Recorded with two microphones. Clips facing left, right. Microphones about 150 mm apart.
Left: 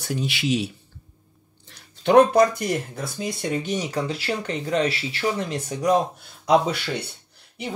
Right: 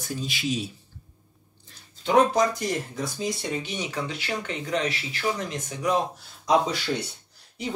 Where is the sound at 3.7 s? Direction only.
35° left (ahead or behind).